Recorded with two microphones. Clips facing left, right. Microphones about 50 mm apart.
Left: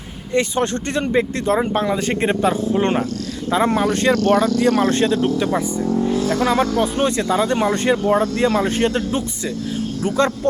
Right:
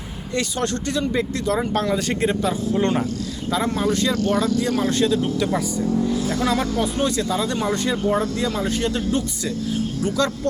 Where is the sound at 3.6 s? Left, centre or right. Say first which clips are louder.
Left 5 dB; left.